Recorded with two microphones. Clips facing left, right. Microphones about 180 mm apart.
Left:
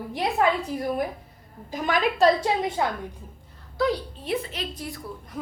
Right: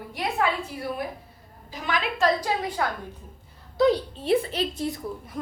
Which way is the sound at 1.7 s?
45° left (ahead or behind).